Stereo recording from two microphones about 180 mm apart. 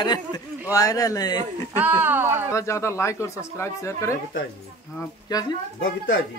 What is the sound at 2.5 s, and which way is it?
Speech, 15° left (ahead or behind).